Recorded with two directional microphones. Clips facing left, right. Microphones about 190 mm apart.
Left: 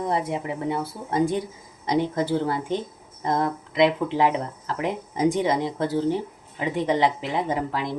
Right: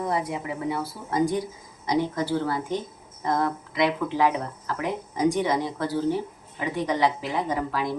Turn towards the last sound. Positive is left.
turn(degrees=25)  # may be behind; listen again after turning